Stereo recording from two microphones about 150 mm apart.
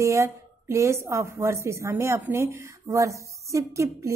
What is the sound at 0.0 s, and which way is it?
A woman's voice, 20° right (ahead or behind).